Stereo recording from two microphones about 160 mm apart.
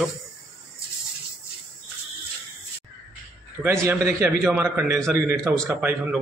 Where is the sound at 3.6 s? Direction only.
15° right (ahead or behind).